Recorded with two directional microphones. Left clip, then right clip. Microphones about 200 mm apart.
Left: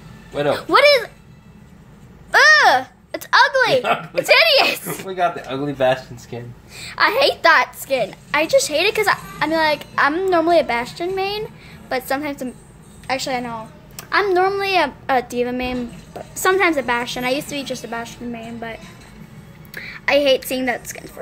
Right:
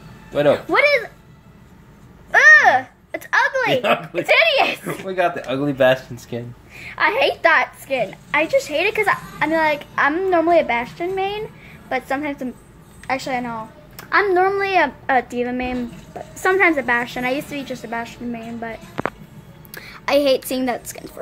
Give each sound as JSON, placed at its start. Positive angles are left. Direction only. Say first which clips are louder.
{"t": 0.3, "sound": "speech", "louder": "right 4 dB", "side_deg": -45}
{"t": 0.7, "sound": "a woman's voice", "louder": "left 3 dB", "side_deg": 15}
{"t": 2.3, "sound": "a sound", "louder": "right 1 dB", "side_deg": 15}
{"t": 4.2, "sound": "a woman's voice", "louder": "left 3 dB", "side_deg": 15}
{"t": 5.0, "sound": "speech", "louder": "right 1 dB", "side_deg": -40}
{"t": 6.8, "sound": "a woman's voice", "louder": "left 2 dB", "side_deg": 10}